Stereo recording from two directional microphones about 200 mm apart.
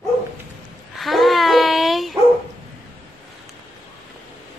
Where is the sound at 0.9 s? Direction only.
Centre (ahead or behind).